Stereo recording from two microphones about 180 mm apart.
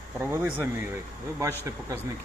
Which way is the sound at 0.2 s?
10° right (ahead or behind).